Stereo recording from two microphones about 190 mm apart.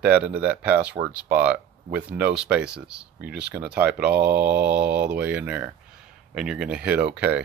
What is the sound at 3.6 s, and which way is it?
Speech, 10° right (ahead or behind).